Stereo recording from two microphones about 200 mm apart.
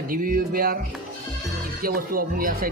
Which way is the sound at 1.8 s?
45° right (ahead or behind).